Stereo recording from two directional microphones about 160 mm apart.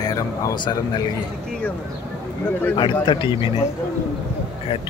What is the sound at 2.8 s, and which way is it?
Speech, 30° left (ahead or behind).